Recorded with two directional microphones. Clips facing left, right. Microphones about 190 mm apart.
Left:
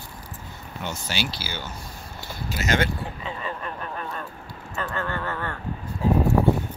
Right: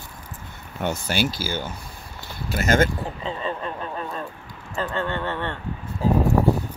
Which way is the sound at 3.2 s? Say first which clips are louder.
Right 4 dB; 30° right (ahead or behind).